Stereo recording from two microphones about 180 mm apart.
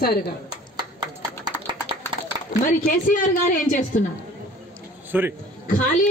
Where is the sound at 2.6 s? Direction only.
45° left (ahead or behind).